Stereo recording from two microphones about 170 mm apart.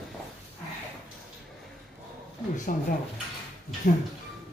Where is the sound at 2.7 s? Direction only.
50° left (ahead or behind).